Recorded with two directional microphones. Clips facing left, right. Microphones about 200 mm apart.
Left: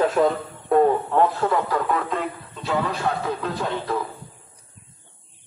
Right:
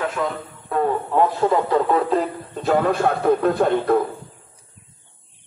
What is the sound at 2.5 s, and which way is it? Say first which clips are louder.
Speech: right 7 dB; 50° right (ahead or behind).